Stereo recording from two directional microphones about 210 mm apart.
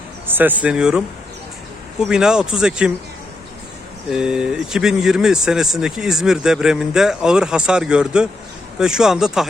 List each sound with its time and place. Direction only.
0.3 s speech: 10° right (ahead or behind)
4.1 s speech: 5° right (ahead or behind)